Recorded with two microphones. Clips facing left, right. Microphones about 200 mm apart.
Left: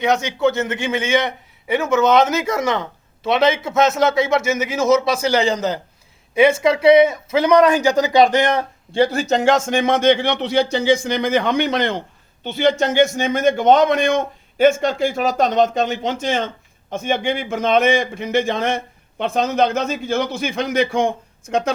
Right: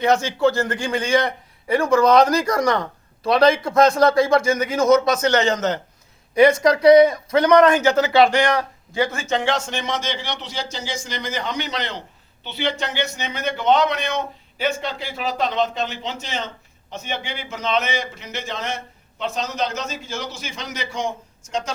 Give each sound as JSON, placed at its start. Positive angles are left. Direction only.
{"t": 0.0, "sound": "a man's voice", "side_deg": 0}